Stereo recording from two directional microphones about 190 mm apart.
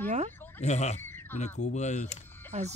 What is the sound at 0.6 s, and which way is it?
Speech, 35° left (ahead or behind).